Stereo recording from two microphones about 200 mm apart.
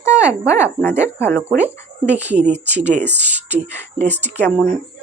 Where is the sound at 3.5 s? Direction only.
35° right (ahead or behind).